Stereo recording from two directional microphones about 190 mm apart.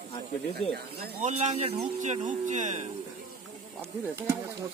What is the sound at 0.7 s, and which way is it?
Speech, 55° right (ahead or behind).